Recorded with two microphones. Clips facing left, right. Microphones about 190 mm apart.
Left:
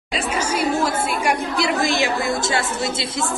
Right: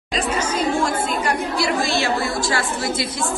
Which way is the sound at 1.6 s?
20° left (ahead or behind).